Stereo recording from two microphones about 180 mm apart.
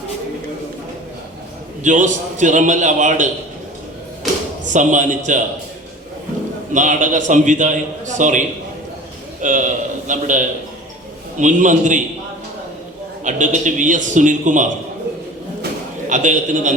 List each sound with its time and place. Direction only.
1.8 s a man's voice: 45° right (ahead or behind)
4.7 s a man's voice: 45° right (ahead or behind)
6.7 s a man's voice: 45° right (ahead or behind)
13.2 s a man's voice: 45° right (ahead or behind)
16.0 s a man's voice: 45° right (ahead or behind)